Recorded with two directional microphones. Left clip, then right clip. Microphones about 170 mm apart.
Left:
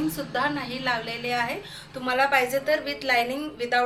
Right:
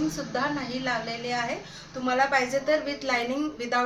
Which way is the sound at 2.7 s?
15° right (ahead or behind).